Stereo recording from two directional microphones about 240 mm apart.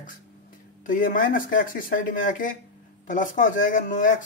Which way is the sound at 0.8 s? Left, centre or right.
Left.